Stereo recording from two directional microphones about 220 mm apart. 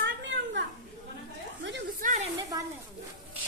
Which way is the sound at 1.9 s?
35° right (ahead or behind).